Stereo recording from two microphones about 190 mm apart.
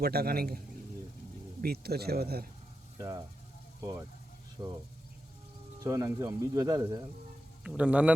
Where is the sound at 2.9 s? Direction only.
20° right (ahead or behind).